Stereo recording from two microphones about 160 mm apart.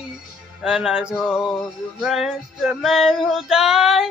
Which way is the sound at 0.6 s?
5° right (ahead or behind).